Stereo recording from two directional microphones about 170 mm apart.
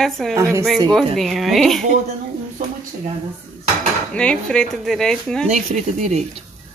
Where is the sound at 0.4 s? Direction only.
15° right (ahead or behind).